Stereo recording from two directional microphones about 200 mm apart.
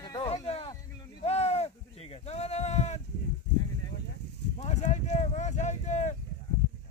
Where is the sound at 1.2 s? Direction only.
30° left (ahead or behind).